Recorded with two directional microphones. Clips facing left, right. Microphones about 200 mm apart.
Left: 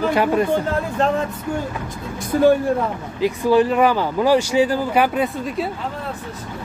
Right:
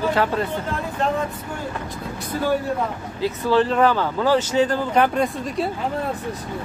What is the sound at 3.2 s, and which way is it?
Speech, 10° left (ahead or behind).